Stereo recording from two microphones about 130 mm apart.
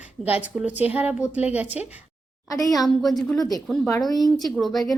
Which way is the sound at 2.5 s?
25° left (ahead or behind).